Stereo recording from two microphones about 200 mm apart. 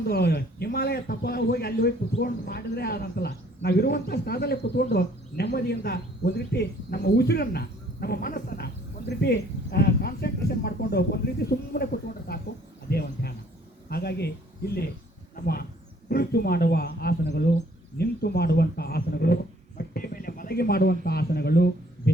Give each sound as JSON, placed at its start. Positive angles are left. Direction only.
{"t": 0.1, "sound": "a man's voice", "side_deg": 55}
{"t": 16.0, "sound": "a man's voice", "side_deg": 50}